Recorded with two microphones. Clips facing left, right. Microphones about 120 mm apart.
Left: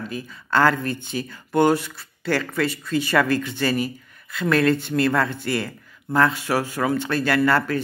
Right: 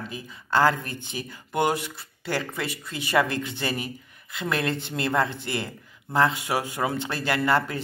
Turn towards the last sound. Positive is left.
turn(degrees=-20)  # may be behind; listen again after turning